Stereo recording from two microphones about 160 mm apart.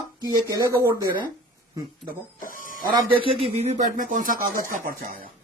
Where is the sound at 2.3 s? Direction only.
55° left (ahead or behind).